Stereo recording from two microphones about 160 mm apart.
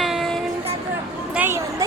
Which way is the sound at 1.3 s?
10° right (ahead or behind).